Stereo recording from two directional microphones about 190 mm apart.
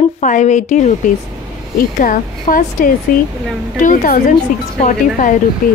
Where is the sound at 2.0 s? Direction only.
45° left (ahead or behind).